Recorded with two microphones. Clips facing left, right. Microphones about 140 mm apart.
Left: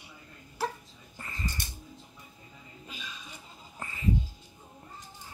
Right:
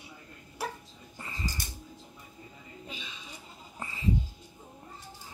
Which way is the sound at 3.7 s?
15° right (ahead or behind).